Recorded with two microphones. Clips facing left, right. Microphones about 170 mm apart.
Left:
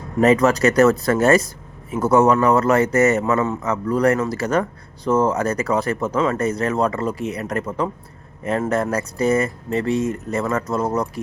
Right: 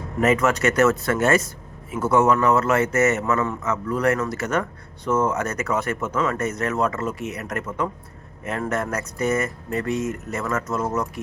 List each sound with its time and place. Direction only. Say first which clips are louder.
0.2 s speech: left 5 dB; 35° left (ahead or behind)